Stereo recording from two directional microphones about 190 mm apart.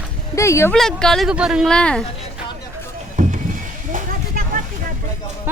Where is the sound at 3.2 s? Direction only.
40° right (ahead or behind).